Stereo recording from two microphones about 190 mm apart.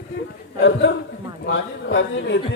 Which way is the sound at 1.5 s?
75° left (ahead or behind).